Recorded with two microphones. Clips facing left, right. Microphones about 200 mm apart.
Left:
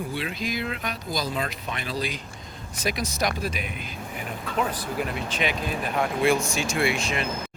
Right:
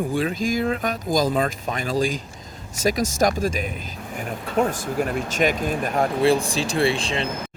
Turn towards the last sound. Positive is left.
turn(degrees=-30)  # may be behind; listen again after turning